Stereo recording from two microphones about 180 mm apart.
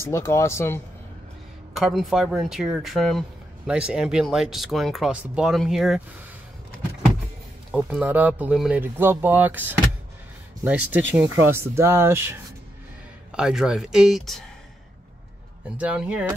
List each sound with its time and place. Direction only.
0.0 s speech: 15° left (ahead or behind)
1.7 s speech: centre (ahead or behind)
7.7 s speech: 5° right (ahead or behind)
15.8 s speech: 5° right (ahead or behind)